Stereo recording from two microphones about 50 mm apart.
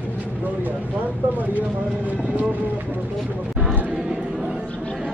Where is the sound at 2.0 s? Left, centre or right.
Right.